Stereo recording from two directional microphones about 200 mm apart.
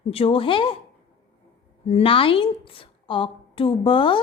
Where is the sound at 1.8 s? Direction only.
30° left (ahead or behind).